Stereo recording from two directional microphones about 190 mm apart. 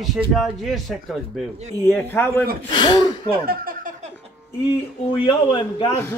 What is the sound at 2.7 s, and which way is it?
Speech, 25° left (ahead or behind).